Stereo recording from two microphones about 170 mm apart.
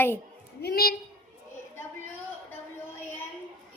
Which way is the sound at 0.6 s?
65° left (ahead or behind).